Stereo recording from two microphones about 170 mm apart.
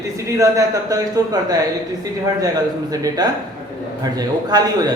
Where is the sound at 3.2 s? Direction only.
25° right (ahead or behind).